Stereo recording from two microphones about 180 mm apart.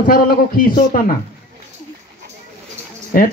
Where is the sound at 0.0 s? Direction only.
55° left (ahead or behind).